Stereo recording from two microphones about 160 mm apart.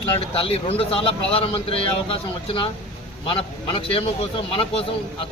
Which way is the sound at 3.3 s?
35° left (ahead or behind).